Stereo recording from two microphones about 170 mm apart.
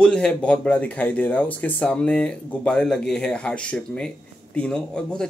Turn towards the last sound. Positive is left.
turn(degrees=5)  # may be behind; listen again after turning